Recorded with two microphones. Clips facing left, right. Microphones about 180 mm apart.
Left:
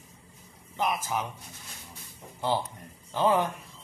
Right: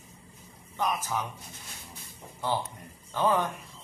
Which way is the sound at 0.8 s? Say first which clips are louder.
Left 1 dB; 10° left (ahead or behind).